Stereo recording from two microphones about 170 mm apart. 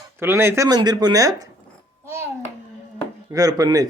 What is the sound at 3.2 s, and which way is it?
Speech, 20° right (ahead or behind).